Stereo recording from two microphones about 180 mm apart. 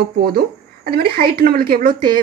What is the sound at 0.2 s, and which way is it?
A woman's voice, 55° right (ahead or behind).